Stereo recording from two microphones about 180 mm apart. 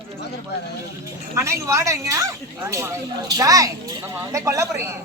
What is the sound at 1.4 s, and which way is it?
Speech, 15° right (ahead or behind).